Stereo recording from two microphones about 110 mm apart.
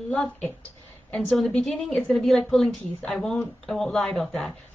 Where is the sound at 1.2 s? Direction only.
5° right (ahead or behind).